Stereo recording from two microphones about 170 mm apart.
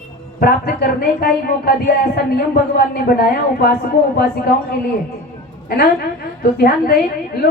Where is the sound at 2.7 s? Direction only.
60° left (ahead or behind).